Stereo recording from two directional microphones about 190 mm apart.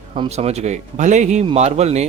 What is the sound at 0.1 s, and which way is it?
Speech, 35° right (ahead or behind).